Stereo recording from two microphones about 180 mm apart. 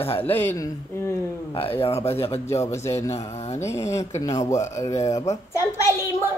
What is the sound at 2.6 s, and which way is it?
Speech, 15° left (ahead or behind).